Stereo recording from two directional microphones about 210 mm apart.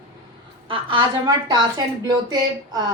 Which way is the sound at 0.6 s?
25° right (ahead or behind).